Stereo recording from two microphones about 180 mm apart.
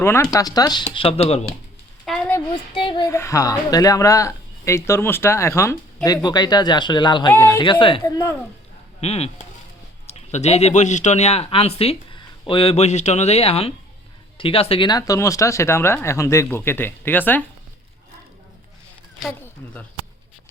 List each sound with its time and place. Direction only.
0.0 s speech: 15° left (ahead or behind); by 1.5 s 35° left (ahead or behind)
2.0 s a sound: 5° left (ahead or behind)
2.5 s speech: 25° left (ahead or behind)
3.1 s speech: 15° left (ahead or behind)
7.3 s speech: 10° left (ahead or behind)
7.6 s speech: 25° left (ahead or behind)
8.0 s speech: 15° left (ahead or behind)
9.0 s speech: 35° left (ahead or behind); by 17.4 s 10° left (ahead or behind)